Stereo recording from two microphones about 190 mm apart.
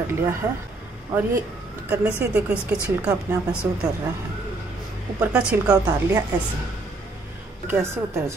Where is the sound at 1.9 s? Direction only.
5° right (ahead or behind).